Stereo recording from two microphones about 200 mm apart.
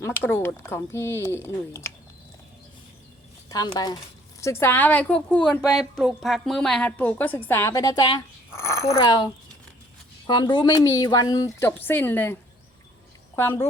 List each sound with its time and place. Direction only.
0.0 s a woman's voice: 10° left (ahead or behind)
3.5 s a woman's voice: 20° left (ahead or behind)